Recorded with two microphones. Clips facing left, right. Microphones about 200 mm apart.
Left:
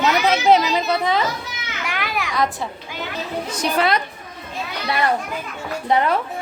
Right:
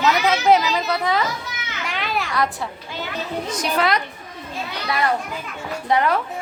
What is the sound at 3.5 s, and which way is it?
Speech, 30° left (ahead or behind).